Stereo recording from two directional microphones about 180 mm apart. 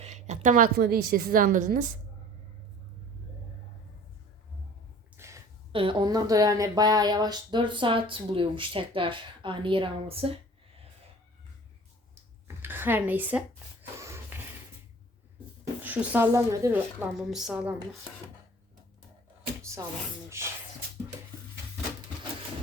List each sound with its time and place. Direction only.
0.0 s a woman's voice: 40° right (ahead or behind)
5.1 s a sound: 15° right (ahead or behind)
5.7 s speech: 30° right (ahead or behind)
12.6 s speech: 10° right (ahead or behind)
14.0 s a sound: 15° right (ahead or behind)
15.8 s a woman's voice: 10° right (ahead or behind)
20.4 s a woman's voice: 15° right (ahead or behind)